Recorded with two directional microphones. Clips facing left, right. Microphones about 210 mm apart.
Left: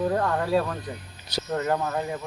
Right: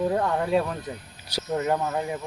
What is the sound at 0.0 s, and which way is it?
Speech, 10° right (ahead or behind).